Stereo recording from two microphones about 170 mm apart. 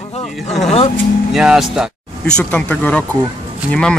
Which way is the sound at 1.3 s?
5° right (ahead or behind).